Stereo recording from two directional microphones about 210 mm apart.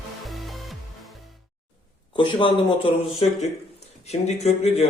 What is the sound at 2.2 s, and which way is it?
Speech, 25° left (ahead or behind).